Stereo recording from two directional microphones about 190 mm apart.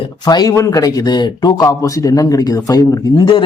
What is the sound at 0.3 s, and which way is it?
Speech, 20° left (ahead or behind).